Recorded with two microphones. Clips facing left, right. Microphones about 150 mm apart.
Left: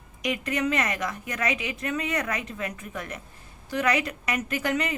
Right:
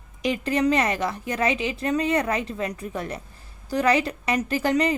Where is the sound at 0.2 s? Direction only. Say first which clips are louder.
Right 5 dB; 30° right (ahead or behind).